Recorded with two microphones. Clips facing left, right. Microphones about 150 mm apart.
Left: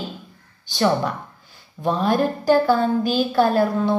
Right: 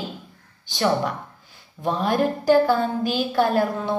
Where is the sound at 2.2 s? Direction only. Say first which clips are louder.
Right 3 dB; 15° right (ahead or behind).